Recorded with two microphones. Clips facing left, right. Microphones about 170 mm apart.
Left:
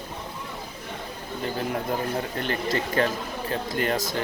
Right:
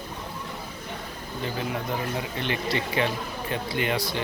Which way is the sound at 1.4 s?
45° left (ahead or behind).